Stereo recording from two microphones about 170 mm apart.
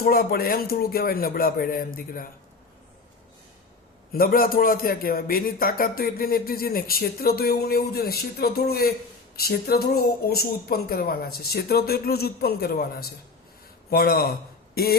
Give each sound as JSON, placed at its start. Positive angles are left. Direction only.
{"t": 0.0, "sound": "a man's voice", "side_deg": 60}
{"t": 4.1, "sound": "a man's voice", "side_deg": 60}